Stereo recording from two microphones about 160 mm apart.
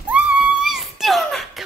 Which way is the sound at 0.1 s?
5° right (ahead or behind).